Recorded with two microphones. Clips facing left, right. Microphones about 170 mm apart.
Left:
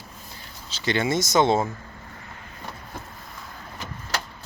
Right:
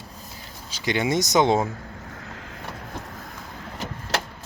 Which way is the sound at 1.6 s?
70° right (ahead or behind).